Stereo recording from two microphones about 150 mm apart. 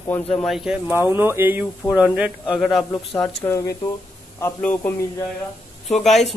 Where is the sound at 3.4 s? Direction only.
20° left (ahead or behind).